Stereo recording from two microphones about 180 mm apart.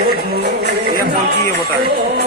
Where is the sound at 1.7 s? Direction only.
55° right (ahead or behind).